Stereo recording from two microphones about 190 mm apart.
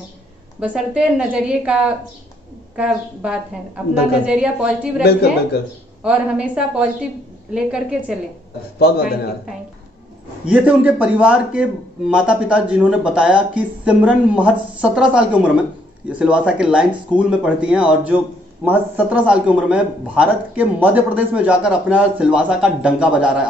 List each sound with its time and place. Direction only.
0.6 s a man's voice: 5° right (ahead or behind)
6.0 s a man's voice: 5° right (ahead or behind)
8.7 s a man's voice: 55° left (ahead or behind)
10.4 s a man's voice: 5° right (ahead or behind)